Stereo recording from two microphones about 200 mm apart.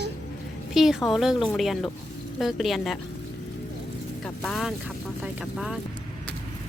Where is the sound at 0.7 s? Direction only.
Centre (ahead or behind).